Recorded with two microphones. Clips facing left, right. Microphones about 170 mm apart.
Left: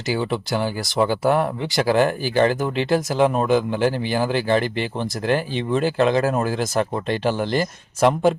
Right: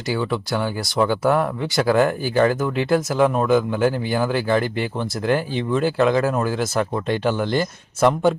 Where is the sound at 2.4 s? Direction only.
25° left (ahead or behind).